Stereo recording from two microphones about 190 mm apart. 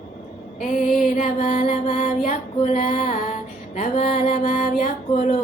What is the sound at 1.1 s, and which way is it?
Music, 40° left (ahead or behind).